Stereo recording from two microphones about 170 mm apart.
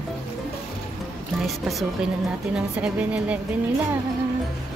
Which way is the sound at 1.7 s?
Centre (ahead or behind).